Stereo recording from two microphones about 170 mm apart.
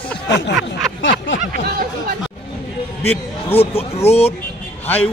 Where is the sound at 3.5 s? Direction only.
35° left (ahead or behind).